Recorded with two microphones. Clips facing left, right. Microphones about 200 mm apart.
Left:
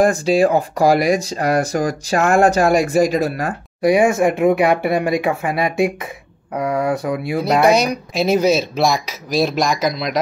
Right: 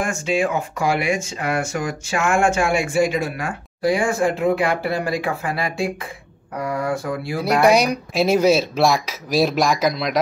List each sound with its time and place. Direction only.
0.0 s speech: 35° left (ahead or behind)
3.8 s speech: 20° left (ahead or behind)
7.8 s speech: 5° right (ahead or behind)